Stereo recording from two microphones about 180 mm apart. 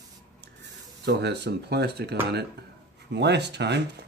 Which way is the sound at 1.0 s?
65° right (ahead or behind).